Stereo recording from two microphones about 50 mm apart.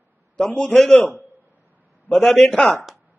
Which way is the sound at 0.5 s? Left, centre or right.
Left.